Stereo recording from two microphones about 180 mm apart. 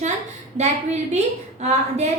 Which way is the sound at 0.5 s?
40° right (ahead or behind).